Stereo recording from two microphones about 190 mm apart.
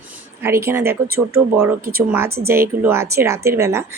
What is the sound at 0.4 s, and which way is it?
Speech, 15° right (ahead or behind).